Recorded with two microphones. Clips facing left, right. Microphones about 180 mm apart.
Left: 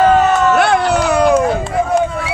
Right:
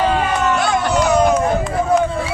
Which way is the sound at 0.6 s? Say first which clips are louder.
Left 4 dB; 60° left (ahead or behind).